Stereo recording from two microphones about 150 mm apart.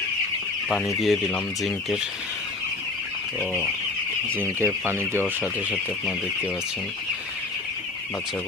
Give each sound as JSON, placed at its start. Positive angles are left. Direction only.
{"t": 0.7, "sound": "speech", "side_deg": 5}
{"t": 4.6, "sound": "speech", "side_deg": -15}